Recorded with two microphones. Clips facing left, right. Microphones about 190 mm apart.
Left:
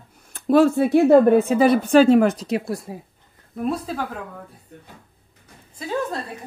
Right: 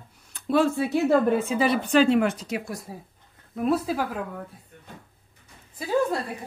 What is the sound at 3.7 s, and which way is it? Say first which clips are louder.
Speech: right 2 dB; 5° right (ahead or behind).